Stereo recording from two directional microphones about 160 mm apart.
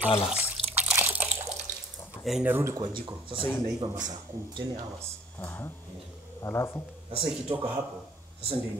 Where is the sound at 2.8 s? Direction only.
30° right (ahead or behind).